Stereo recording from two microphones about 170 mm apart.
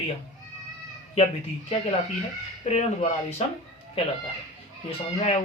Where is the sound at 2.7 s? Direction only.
40° left (ahead or behind).